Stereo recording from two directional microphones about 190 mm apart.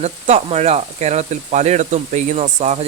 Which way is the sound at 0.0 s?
35° right (ahead or behind).